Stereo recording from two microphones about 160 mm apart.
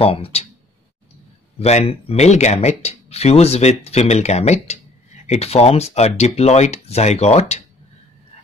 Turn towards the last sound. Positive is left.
turn(degrees=40)  # may be behind; listen again after turning